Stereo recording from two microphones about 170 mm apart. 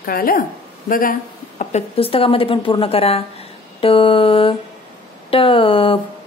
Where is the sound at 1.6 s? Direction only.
40° left (ahead or behind).